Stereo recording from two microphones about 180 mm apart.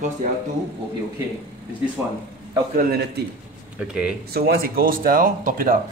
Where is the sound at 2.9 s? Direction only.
65° right (ahead or behind).